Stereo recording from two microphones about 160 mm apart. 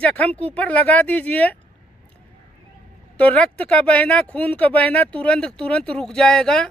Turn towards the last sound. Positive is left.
turn(degrees=5)  # may be behind; listen again after turning